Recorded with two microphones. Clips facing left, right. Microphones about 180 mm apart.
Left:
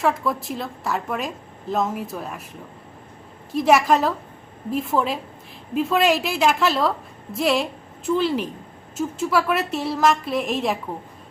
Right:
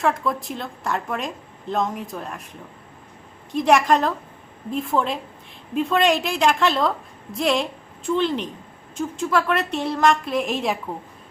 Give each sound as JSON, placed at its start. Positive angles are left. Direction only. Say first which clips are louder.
{"t": 0.0, "sound": "a woman's voice", "louder": "even", "side_deg": 5}
{"t": 3.5, "sound": "a woman's voice", "louder": "even", "side_deg": 5}